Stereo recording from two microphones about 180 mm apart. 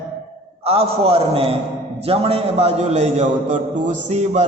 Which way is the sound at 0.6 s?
35° right (ahead or behind).